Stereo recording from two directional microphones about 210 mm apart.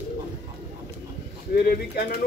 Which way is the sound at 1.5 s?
45° left (ahead or behind).